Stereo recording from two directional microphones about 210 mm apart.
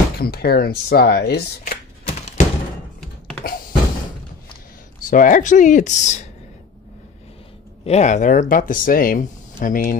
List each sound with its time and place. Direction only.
0.2 s speech: 50° left (ahead or behind)
3.0 s computer keyboard: 5° left (ahead or behind)
5.1 s speech: 40° left (ahead or behind)
7.8 s speech: 30° left (ahead or behind)